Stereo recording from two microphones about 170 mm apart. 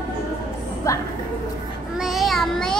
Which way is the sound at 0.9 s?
20° left (ahead or behind).